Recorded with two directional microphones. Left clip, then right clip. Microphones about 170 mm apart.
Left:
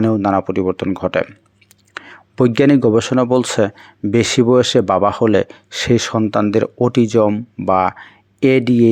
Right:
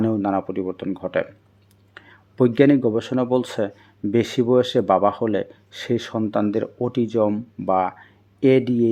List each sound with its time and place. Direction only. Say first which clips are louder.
0.0 s speech: left 6 dB; 20° left (ahead or behind)